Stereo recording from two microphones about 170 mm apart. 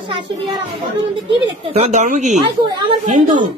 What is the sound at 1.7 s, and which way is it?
Speech, 40° right (ahead or behind).